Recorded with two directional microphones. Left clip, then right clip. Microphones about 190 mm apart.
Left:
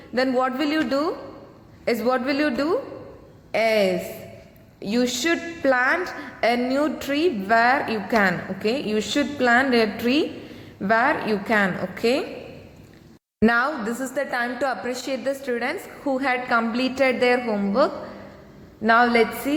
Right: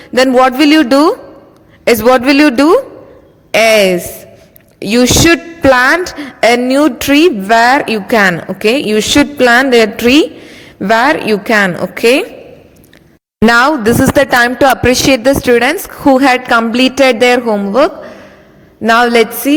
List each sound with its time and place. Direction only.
0.1 s a woman's voice: 50° right (ahead or behind)
13.4 s a woman's voice: 55° right (ahead or behind)